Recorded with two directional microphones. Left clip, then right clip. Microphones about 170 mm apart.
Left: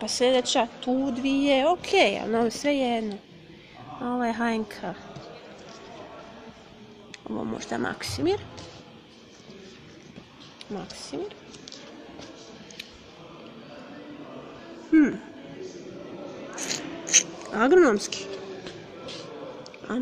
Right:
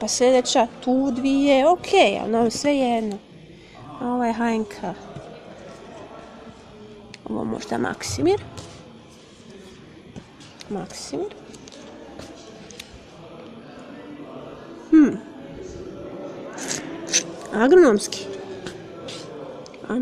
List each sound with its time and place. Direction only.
0.0 s a woman's voice: 20° right (ahead or behind)
7.2 s a woman's voice: 5° right (ahead or behind)
10.7 s speech: 20° right (ahead or behind)
14.9 s a sound: 10° right (ahead or behind)
16.5 s scissors: centre (ahead or behind)